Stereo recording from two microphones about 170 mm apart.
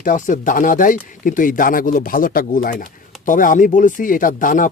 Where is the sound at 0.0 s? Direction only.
50° left (ahead or behind).